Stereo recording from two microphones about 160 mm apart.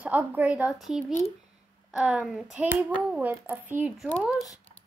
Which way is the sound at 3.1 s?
15° right (ahead or behind).